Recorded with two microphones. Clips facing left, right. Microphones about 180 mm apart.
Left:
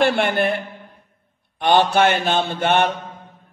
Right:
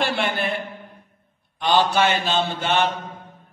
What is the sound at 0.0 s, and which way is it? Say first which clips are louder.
Speech: left 6 dB; 55° left (ahead or behind).